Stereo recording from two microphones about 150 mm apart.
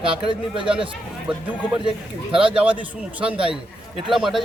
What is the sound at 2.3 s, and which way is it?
Speech, 35° right (ahead or behind).